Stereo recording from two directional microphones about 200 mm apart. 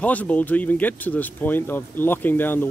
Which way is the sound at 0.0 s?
5° left (ahead or behind).